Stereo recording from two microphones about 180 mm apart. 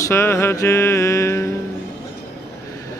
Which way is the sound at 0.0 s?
15° left (ahead or behind).